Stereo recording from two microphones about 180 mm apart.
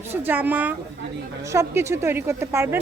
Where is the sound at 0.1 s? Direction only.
10° right (ahead or behind).